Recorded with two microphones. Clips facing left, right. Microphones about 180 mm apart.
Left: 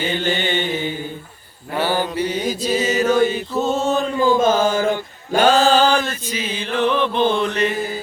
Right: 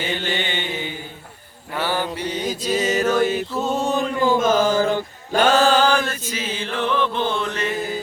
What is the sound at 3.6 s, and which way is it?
Music, 10° right (ahead or behind).